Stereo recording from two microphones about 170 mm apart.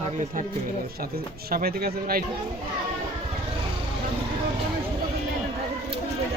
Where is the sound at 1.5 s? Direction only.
60° right (ahead or behind).